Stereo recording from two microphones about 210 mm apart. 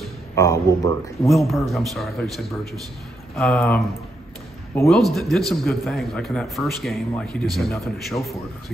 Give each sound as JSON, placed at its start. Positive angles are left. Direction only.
{"t": 0.4, "sound": "speech", "side_deg": 15}
{"t": 1.3, "sound": "a man's voice", "side_deg": 0}
{"t": 4.8, "sound": "a man's voice", "side_deg": 0}